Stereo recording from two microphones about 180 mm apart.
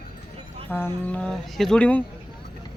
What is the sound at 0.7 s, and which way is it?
Speech, 10° left (ahead or behind).